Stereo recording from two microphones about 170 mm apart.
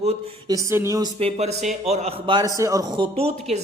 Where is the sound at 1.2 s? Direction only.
35° right (ahead or behind).